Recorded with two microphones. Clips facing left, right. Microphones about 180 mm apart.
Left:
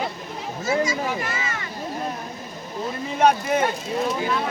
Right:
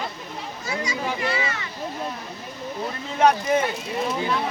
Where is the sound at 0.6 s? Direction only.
45° left (ahead or behind).